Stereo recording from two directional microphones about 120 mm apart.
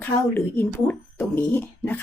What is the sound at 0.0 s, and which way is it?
A woman's voice, 15° left (ahead or behind).